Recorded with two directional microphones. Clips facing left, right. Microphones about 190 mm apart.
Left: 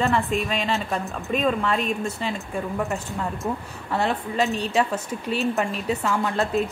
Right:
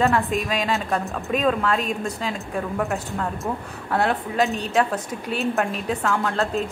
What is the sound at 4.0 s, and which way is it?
A woman's voice, centre (ahead or behind).